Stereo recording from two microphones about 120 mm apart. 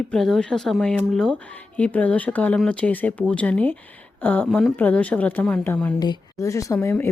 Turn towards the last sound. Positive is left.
turn(degrees=15)  # may be behind; listen again after turning